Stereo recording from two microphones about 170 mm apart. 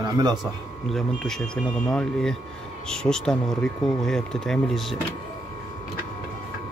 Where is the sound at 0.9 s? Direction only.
5° left (ahead or behind).